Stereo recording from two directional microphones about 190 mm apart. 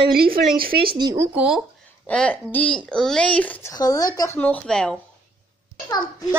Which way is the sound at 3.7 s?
20° left (ahead or behind).